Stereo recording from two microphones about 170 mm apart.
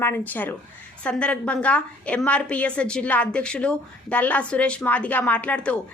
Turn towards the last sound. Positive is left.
turn(degrees=5)  # may be behind; listen again after turning